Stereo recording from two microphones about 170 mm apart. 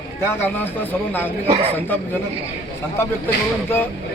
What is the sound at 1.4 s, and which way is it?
Speech, 35° right (ahead or behind).